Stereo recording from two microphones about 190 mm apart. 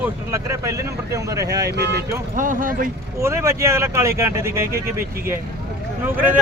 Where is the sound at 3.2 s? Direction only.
15° right (ahead or behind).